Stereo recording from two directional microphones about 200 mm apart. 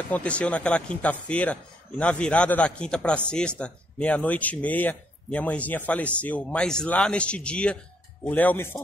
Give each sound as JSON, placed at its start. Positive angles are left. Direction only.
{"t": 0.1, "sound": "speech", "side_deg": 5}